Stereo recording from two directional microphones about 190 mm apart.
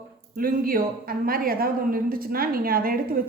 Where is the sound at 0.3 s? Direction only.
50° right (ahead or behind).